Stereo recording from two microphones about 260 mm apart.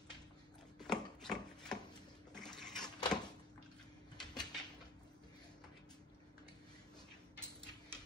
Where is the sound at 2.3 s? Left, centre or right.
Centre.